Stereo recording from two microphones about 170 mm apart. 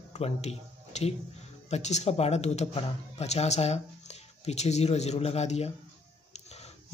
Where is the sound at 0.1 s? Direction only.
40° left (ahead or behind).